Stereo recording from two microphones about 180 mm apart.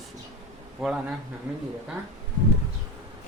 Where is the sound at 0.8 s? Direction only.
5° right (ahead or behind).